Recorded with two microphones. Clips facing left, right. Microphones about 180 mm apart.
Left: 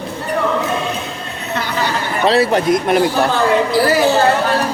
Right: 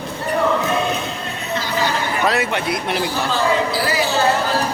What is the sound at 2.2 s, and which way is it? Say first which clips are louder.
Speech: left 8 dB; 30° left (ahead or behind).